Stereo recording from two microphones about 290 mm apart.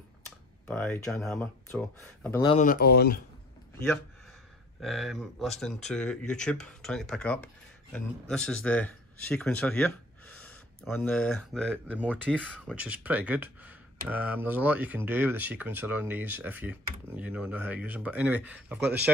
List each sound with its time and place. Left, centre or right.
0.7 s speech: centre
2.5 s speech: left
4.7 s speech: centre